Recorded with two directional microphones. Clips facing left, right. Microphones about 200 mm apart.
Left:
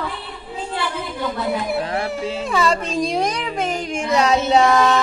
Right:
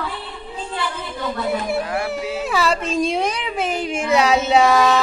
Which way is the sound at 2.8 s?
35° left (ahead or behind).